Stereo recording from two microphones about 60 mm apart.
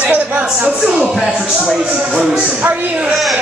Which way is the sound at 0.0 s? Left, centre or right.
Right.